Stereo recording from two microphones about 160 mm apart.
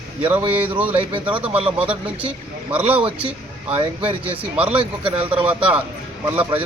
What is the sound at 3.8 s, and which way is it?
Speech, 35° right (ahead or behind).